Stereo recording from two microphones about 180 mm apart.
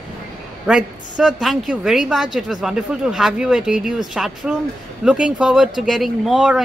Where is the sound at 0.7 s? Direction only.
5° right (ahead or behind).